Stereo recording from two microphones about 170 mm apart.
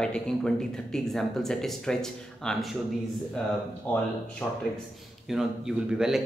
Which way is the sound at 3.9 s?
10° left (ahead or behind).